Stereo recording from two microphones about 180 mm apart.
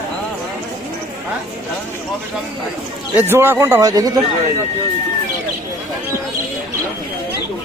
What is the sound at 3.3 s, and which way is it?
Speech, 10° right (ahead or behind).